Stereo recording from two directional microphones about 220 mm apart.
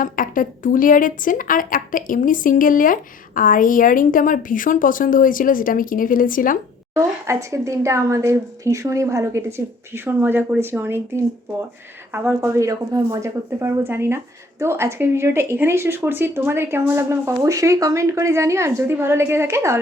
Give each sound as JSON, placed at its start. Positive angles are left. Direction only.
{"t": 0.0, "sound": "a woman's voice", "side_deg": 40}
{"t": 6.9, "sound": "speech", "side_deg": -15}
{"t": 12.1, "sound": "speech", "side_deg": -10}